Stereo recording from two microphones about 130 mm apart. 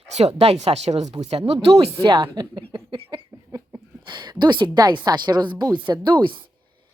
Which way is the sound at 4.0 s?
35° right (ahead or behind).